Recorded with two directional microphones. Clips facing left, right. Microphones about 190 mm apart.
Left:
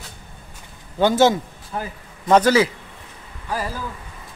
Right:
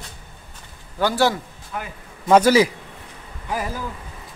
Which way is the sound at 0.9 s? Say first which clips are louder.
Left 4 dB; 20° left (ahead or behind).